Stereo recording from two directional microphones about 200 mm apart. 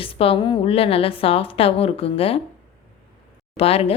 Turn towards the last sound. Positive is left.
turn(degrees=30)  # may be behind; listen again after turning